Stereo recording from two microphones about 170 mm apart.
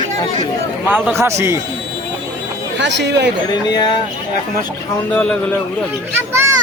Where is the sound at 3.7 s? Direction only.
25° left (ahead or behind).